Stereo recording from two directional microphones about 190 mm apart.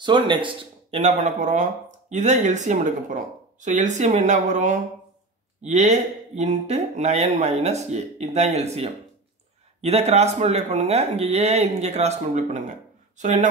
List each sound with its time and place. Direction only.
0.0 s speech: 25° right (ahead or behind)
0.9 s speech: 40° right (ahead or behind)